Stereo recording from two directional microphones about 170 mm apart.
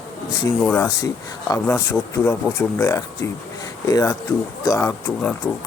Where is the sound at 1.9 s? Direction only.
15° left (ahead or behind).